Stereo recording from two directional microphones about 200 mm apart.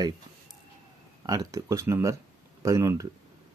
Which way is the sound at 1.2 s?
20° right (ahead or behind).